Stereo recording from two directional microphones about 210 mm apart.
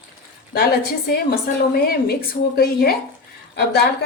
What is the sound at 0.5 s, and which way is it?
Speech, 45° left (ahead or behind).